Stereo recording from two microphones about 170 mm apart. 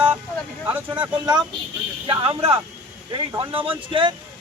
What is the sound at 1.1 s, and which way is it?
Speech, 25° right (ahead or behind).